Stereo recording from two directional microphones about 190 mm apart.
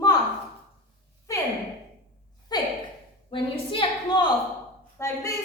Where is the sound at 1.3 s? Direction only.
15° left (ahead or behind).